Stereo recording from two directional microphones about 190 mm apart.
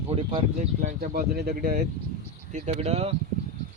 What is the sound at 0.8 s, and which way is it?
Speech, 45° right (ahead or behind).